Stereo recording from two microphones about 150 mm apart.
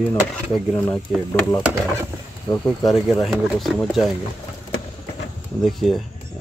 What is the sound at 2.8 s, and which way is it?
Speech, centre (ahead or behind).